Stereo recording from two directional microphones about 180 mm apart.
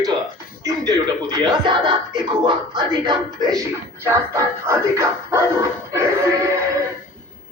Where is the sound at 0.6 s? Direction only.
20° right (ahead or behind).